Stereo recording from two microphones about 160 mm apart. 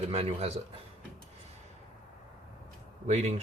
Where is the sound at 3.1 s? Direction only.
45° right (ahead or behind).